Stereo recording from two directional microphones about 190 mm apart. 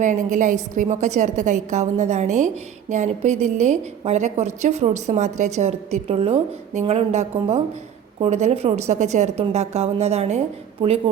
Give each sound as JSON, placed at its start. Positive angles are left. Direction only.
{"t": 0.0, "sound": "a woman's voice", "side_deg": -40}